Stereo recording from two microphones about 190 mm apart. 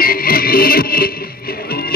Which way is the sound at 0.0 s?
50° left (ahead or behind).